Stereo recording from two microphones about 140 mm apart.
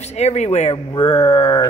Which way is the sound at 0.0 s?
50° left (ahead or behind).